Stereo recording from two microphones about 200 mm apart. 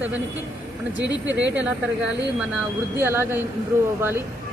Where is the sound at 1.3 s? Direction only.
65° right (ahead or behind).